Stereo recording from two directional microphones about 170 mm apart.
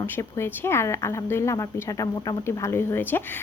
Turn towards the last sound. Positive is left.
turn(degrees=10)  # may be behind; listen again after turning